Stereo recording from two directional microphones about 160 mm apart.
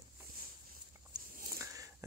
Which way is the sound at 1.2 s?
60° right (ahead or behind).